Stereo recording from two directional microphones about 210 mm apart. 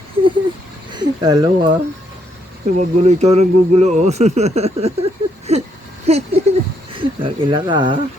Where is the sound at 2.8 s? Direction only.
30° right (ahead or behind).